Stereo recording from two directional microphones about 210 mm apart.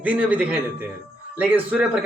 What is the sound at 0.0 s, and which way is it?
A man's voice, 5° right (ahead or behind).